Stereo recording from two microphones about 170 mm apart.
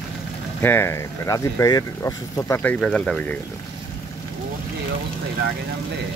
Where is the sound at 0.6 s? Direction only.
15° left (ahead or behind).